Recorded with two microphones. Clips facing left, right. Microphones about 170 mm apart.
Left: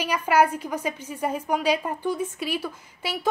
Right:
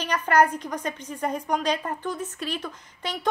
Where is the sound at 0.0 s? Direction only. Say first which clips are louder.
Even; 10° left (ahead or behind).